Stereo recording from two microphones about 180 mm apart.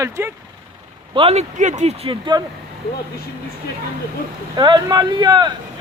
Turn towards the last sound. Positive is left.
turn(degrees=-25)  # may be behind; listen again after turning